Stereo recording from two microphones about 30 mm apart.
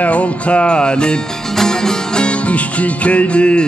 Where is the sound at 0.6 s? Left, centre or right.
Left.